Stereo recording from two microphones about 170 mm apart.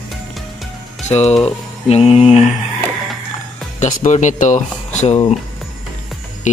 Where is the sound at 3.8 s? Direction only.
45° left (ahead or behind).